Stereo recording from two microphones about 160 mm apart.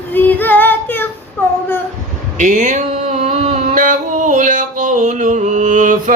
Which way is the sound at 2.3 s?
50° right (ahead or behind).